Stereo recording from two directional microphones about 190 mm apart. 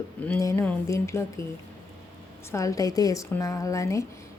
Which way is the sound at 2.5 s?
15° left (ahead or behind).